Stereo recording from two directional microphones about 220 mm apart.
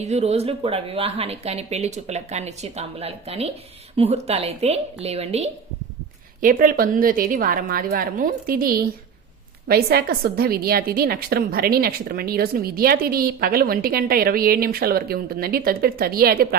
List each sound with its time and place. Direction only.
0.0 s speech: 30° right (ahead or behind)
6.4 s a woman's voice: 40° right (ahead or behind)